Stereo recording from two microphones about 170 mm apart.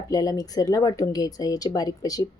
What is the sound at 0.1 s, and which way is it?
A woman's voice, 20° left (ahead or behind).